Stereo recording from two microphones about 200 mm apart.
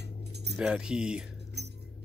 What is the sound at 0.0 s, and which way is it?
Keys jangling, 55° right (ahead or behind).